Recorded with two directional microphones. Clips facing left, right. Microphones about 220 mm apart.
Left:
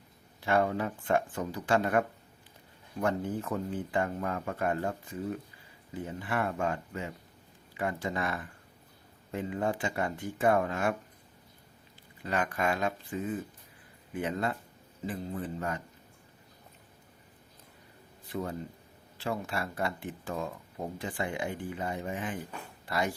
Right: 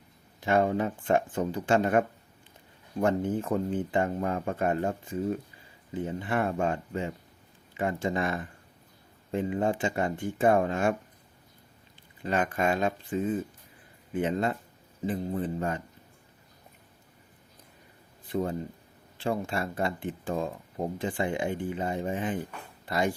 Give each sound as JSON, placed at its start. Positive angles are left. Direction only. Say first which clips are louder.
{"t": 0.3, "sound": "speech", "louder": "right 3 dB", "side_deg": -20}
{"t": 12.2, "sound": "speech", "louder": "right 3 dB", "side_deg": -25}
{"t": 18.3, "sound": "speech", "louder": "right 5 dB", "side_deg": -30}